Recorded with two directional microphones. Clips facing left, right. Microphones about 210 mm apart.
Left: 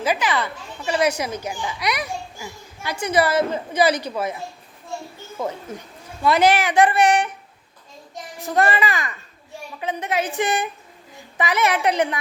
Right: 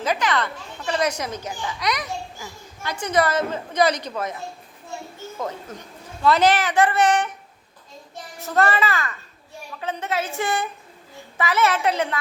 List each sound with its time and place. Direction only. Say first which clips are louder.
0.0 s a child's voice: left 1 dB; 5° left (ahead or behind)
6.2 s a child's voice: left 1 dB; 10° left (ahead or behind)
8.4 s a child's voice: left 1 dB; 15° left (ahead or behind)